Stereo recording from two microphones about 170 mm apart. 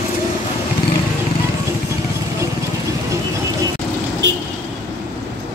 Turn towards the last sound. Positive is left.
turn(degrees=-90)